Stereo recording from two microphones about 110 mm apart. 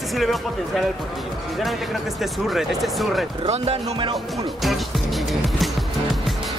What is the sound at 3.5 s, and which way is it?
Speech, 75° right (ahead or behind).